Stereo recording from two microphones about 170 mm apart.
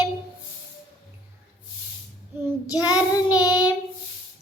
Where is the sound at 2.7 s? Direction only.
20° left (ahead or behind).